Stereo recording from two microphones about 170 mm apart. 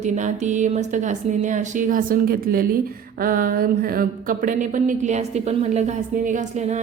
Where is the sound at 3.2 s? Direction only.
60° right (ahead or behind).